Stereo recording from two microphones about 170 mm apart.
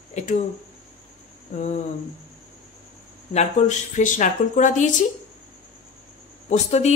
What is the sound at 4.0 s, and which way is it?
Speech, 50° left (ahead or behind).